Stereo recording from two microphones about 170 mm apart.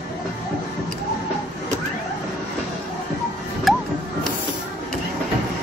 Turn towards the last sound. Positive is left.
turn(degrees=0)  # may be behind; listen again after turning